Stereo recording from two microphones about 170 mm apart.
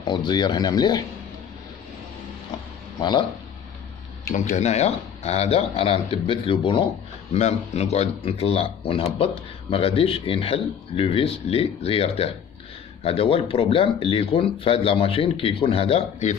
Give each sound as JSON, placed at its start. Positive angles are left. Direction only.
{"t": 0.0, "sound": "speech", "side_deg": 25}
{"t": 3.0, "sound": "speech", "side_deg": 25}
{"t": 4.3, "sound": "speech", "side_deg": 50}